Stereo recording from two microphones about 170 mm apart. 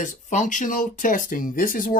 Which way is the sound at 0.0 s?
45° left (ahead or behind).